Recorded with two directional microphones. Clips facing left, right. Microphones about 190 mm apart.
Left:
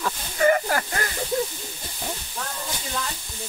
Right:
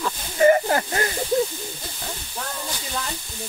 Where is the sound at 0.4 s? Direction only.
25° right (ahead or behind).